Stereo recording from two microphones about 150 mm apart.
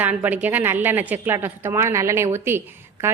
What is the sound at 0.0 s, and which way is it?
A woman's voice, 10° right (ahead or behind).